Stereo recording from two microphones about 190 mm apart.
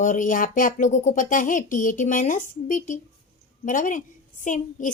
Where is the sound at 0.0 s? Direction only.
45° left (ahead or behind).